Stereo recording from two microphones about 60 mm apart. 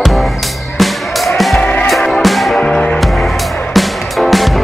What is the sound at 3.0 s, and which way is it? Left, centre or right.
Music, centre.